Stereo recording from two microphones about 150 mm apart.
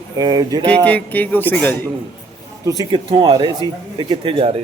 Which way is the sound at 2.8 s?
30° right (ahead or behind).